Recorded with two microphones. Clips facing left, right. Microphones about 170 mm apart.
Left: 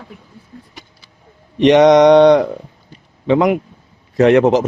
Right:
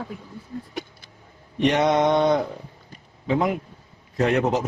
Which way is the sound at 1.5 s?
90° left.